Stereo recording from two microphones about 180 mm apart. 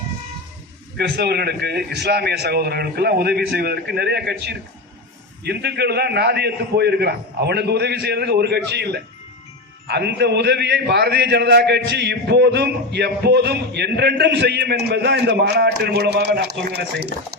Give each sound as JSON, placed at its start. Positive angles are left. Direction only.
{"t": 0.9, "sound": "a man's voice", "side_deg": -65}